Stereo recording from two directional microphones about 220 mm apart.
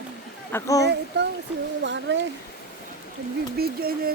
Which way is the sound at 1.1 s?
50° right (ahead or behind).